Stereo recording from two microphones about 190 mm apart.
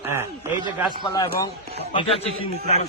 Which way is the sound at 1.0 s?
20° left (ahead or behind).